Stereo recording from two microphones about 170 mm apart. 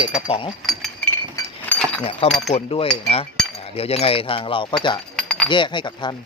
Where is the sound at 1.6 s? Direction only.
10° left (ahead or behind).